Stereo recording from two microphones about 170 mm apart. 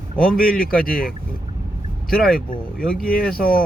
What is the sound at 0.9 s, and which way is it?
Speech, 5° left (ahead or behind).